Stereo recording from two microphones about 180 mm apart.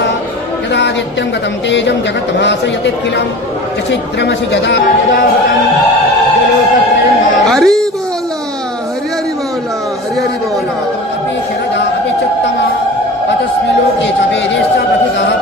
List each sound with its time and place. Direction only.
1.7 s a man's voice: 75° left (ahead or behind)
7.4 s speech: centre (ahead or behind)